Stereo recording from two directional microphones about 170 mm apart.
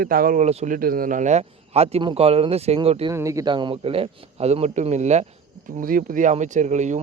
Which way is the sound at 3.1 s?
20° right (ahead or behind).